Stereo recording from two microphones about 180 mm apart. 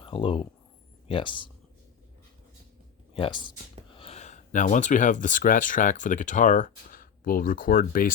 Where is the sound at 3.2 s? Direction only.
30° left (ahead or behind).